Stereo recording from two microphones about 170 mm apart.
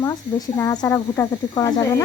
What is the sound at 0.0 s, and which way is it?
Speech, 20° left (ahead or behind).